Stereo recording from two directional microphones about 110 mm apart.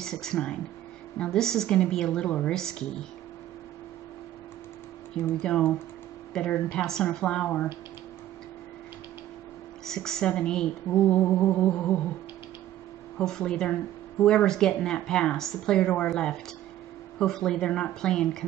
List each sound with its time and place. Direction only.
0.0 s speech: 5° left (ahead or behind)
5.2 s speech: 15° left (ahead or behind)
9.8 s speech: 5° left (ahead or behind)
13.2 s speech: 5° left (ahead or behind)